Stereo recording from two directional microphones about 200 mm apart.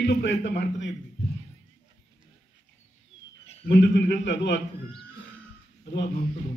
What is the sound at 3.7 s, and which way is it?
Speech, 60° left (ahead or behind).